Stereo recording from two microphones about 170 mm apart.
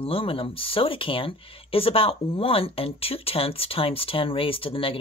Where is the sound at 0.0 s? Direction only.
35° left (ahead or behind).